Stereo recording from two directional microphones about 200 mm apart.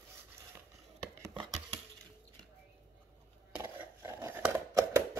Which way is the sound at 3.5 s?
10° right (ahead or behind).